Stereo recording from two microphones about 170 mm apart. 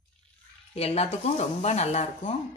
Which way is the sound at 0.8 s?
35° left (ahead or behind).